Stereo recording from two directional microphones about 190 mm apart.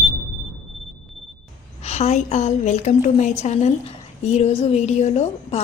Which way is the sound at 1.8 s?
35° left (ahead or behind).